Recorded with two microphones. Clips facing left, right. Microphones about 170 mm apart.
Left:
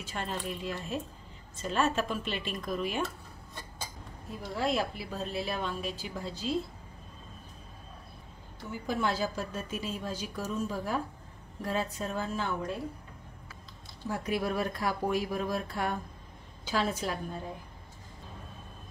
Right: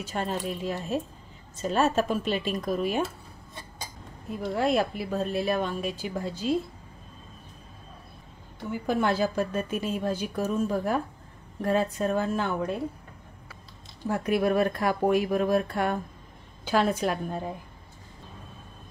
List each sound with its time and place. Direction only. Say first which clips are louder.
0.0 s a woman's voice: right 6 dB; 40° right (ahead or behind)
4.6 s speech: right 5 dB; 55° right (ahead or behind)
8.8 s a woman's voice: right 6 dB; 60° right (ahead or behind)
14.0 s a woman's voice: right 7 dB; 60° right (ahead or behind)